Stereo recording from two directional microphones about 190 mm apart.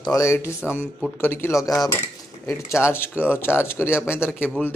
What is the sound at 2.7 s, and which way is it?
Speech, 10° left (ahead or behind).